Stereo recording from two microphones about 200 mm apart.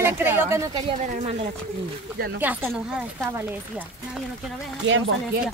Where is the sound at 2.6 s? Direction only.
Centre (ahead or behind).